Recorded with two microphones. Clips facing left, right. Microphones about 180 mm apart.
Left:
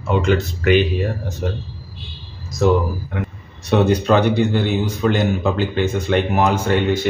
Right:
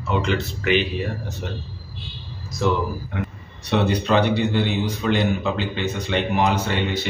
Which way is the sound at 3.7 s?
45° left (ahead or behind).